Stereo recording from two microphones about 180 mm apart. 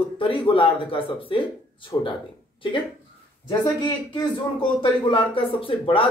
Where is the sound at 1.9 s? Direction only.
15° left (ahead or behind).